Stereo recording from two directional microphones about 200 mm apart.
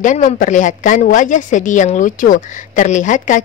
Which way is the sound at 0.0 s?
40° left (ahead or behind).